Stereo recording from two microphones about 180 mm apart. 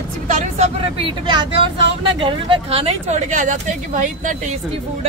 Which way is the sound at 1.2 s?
25° right (ahead or behind).